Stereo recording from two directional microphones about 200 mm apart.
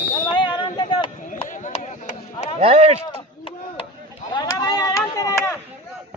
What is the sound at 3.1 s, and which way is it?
Chop, 25° left (ahead or behind).